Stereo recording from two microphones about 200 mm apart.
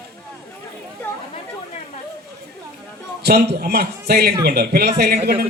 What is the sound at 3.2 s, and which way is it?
A man's voice, 55° right (ahead or behind).